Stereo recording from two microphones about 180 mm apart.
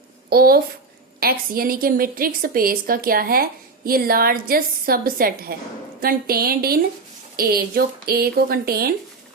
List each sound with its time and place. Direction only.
0.3 s a woman's voice: 60° right (ahead or behind)